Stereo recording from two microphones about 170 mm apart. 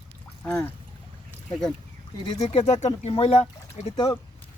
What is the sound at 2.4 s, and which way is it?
Speech, 35° left (ahead or behind).